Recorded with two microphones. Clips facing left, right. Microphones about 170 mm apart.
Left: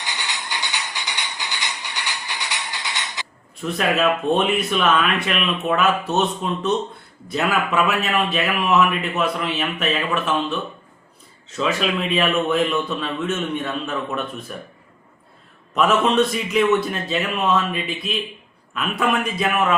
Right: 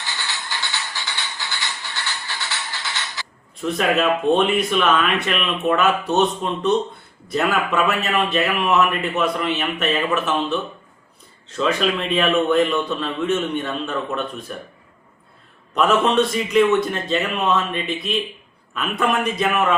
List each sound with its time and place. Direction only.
0.0 s music: 15° left (ahead or behind)
3.6 s a man's voice: centre (ahead or behind)
15.7 s a man's voice: centre (ahead or behind)